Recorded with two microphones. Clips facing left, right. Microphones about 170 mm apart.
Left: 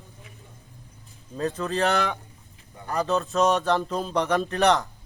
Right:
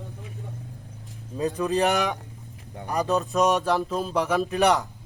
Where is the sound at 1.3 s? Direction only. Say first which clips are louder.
Right 3 dB; 15° right (ahead or behind).